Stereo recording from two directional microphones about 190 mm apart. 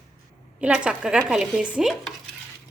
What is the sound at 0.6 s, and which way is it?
Speech, 5° right (ahead or behind).